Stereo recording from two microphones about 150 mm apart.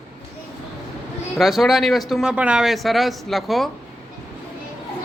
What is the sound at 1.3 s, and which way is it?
Speech, centre (ahead or behind).